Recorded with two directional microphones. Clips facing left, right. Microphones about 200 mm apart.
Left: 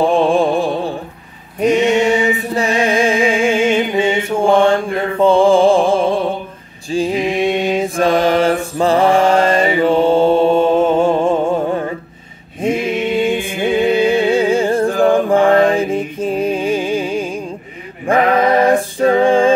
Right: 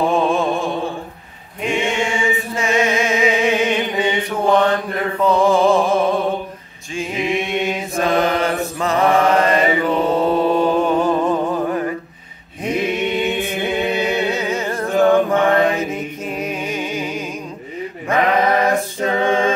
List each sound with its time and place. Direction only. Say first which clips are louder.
0.1 s a sound: left 4 dB; 30° left (ahead or behind)
1.6 s mantra: left 8 dB; 40° left (ahead or behind)
2.5 s music: left 1 dB; 35° left (ahead or behind)
6.9 s mantra: left 5 dB; 35° left (ahead or behind)
12.6 s chant: left 3 dB; 25° left (ahead or behind)
18.0 s a sound: left 4 dB; 30° left (ahead or behind)